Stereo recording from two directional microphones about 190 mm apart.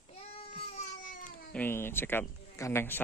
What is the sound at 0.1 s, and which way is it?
Child singing, 30° left (ahead or behind).